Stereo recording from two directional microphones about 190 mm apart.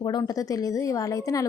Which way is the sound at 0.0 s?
20° left (ahead or behind).